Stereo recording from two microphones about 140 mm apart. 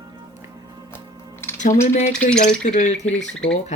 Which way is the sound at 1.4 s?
15° left (ahead or behind).